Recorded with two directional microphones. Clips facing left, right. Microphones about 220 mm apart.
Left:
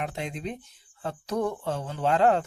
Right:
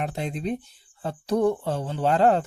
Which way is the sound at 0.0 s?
35° right (ahead or behind).